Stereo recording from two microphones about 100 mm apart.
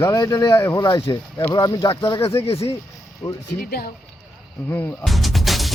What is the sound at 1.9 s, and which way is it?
Speech, 60° left (ahead or behind).